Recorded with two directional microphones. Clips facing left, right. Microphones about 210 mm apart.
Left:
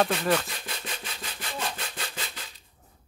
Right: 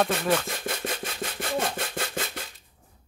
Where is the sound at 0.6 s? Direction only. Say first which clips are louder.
Right 7 dB; 50° right (ahead or behind).